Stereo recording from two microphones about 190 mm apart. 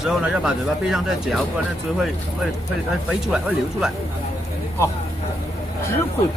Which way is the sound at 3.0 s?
5° right (ahead or behind).